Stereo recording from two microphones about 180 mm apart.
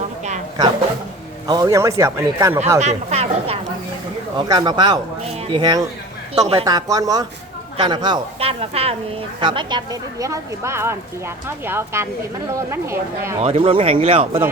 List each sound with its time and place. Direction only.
1.5 s speech: 20° right (ahead or behind)
2.7 s speech: 35° right (ahead or behind)
4.4 s speech: 25° right (ahead or behind)
6.7 s speech: 20° right (ahead or behind)
13.4 s speech: 30° right (ahead or behind)